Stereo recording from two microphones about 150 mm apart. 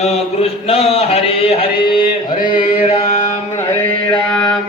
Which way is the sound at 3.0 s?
50° left (ahead or behind).